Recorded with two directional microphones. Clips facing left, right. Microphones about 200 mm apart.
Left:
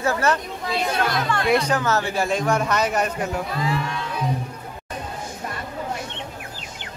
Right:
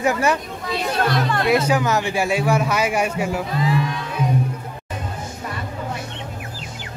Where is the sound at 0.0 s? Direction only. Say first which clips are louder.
Right 2 dB; 15° right (ahead or behind).